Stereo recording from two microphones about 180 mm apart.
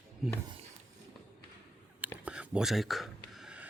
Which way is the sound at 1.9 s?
10° right (ahead or behind).